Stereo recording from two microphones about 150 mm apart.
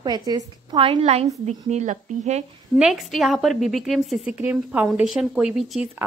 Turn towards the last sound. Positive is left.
turn(degrees=-5)  # may be behind; listen again after turning